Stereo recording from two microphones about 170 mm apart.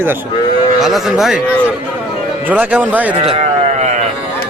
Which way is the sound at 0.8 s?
Centre (ahead or behind).